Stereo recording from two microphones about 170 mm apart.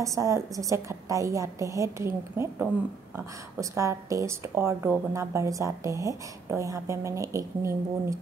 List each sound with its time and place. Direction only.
0.0 s speech: 20° right (ahead or behind)